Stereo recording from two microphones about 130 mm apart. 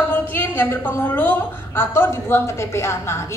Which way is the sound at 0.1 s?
15° left (ahead or behind).